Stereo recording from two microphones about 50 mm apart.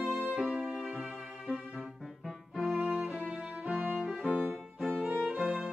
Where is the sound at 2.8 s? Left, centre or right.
Centre.